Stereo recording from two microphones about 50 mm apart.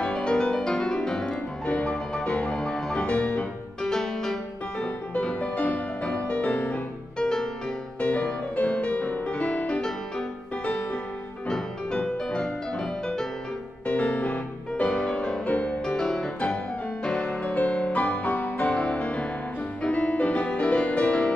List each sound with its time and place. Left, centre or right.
0.0 s music: centre
2.5 s music: centre
3.0 s music: left
3.8 s music: centre
4.7 s music: left
7.2 s music: centre
8.0 s music: left
9.8 s music: centre
10.6 s music: left
11.4 s music: centre
13.8 s music: left
15.8 s music: centre
17.3 s music: left